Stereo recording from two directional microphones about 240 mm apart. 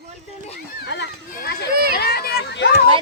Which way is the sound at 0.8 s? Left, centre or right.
Left.